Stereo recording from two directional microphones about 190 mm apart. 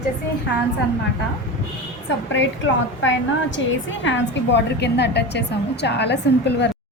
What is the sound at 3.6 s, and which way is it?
A woman's voice, 75° left (ahead or behind).